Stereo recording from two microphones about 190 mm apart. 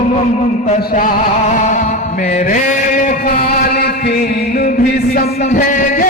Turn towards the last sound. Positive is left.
turn(degrees=45)  # may be behind; listen again after turning